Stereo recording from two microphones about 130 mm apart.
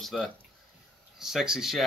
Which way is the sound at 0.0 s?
Centre (ahead or behind).